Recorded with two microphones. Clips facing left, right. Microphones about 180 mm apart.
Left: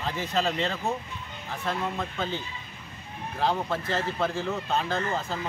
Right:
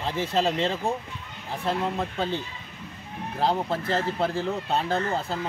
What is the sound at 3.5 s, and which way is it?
Speech, 30° right (ahead or behind).